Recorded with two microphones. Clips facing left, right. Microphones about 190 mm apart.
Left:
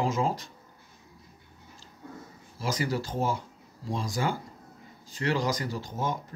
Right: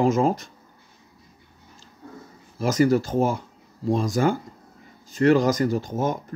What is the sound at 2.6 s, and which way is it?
Speech, 50° right (ahead or behind).